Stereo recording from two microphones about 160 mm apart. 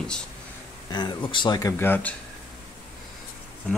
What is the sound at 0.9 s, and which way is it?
Speech, 30° left (ahead or behind).